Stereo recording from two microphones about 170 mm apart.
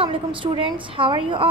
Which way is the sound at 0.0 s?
30° right (ahead or behind).